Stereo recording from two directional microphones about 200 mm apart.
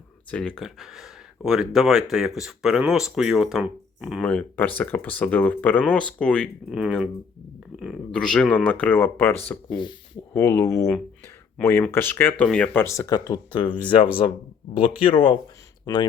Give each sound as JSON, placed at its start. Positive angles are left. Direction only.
{"t": 0.3, "sound": "speech", "side_deg": 5}
{"t": 4.2, "sound": "speech", "side_deg": 10}